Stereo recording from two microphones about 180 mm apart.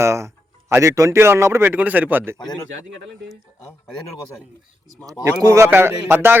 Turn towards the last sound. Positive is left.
turn(degrees=-15)  # may be behind; listen again after turning